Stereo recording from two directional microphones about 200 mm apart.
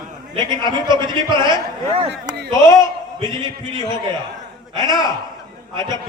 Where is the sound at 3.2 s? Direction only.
20° right (ahead or behind).